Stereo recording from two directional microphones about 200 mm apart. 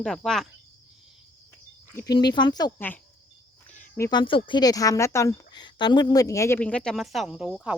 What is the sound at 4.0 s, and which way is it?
Speech, 15° left (ahead or behind).